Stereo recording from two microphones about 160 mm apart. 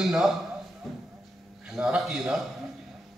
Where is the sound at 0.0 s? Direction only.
Centre (ahead or behind).